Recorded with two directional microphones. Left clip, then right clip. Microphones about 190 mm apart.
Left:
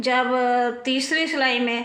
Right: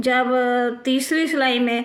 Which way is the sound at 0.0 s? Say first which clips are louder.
Right 2 dB; 50° right (ahead or behind).